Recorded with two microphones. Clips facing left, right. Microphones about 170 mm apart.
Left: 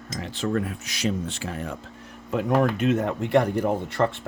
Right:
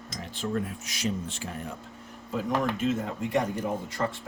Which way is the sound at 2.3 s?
65° left (ahead or behind).